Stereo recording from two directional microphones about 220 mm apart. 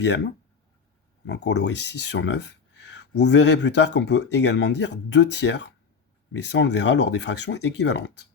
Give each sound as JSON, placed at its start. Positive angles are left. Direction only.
{"t": 1.3, "sound": "speech", "side_deg": 50}